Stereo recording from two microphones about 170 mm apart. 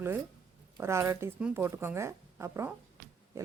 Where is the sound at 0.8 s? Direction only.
15° right (ahead or behind).